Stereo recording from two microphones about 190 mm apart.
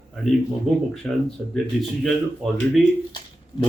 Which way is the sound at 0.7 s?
Centre (ahead or behind).